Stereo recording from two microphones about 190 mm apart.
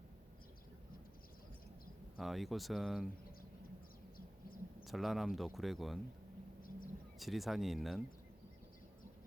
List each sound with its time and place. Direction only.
2.1 s speech: centre (ahead or behind)
4.8 s speech: centre (ahead or behind)
6.6 s vehicle: 45° left (ahead or behind)
7.2 s speech: centre (ahead or behind)